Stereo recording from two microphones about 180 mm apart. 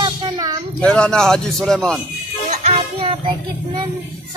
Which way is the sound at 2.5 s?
35° right (ahead or behind).